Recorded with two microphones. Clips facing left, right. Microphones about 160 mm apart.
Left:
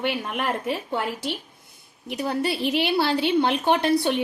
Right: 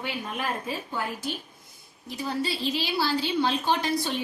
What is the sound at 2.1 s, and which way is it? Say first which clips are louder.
A woman's voice: left 4 dB; 65° left (ahead or behind).